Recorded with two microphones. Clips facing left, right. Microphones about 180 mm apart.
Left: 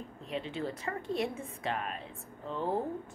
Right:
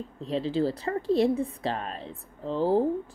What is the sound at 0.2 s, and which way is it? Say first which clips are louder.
A woman's voice: right 10 dB; 35° right (ahead or behind).